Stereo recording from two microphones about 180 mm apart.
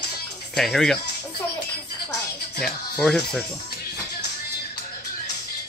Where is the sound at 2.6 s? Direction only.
5° left (ahead or behind).